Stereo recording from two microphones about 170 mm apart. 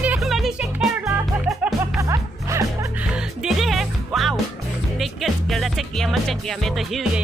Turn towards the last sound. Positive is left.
turn(degrees=0)  # may be behind; listen again after turning